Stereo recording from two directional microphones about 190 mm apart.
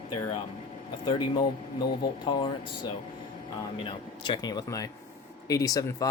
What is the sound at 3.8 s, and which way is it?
Speech, 20° left (ahead or behind).